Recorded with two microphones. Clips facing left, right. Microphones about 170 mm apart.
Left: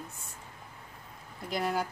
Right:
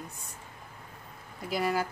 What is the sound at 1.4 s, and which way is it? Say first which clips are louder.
Speech: right 2 dB; 5° right (ahead or behind).